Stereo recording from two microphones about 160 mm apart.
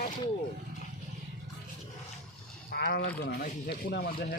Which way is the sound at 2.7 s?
85° left.